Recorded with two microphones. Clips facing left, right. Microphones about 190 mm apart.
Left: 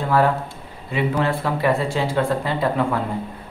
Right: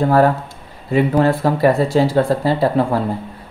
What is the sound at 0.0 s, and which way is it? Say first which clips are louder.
A man's voice: right 5 dB; 40° right (ahead or behind).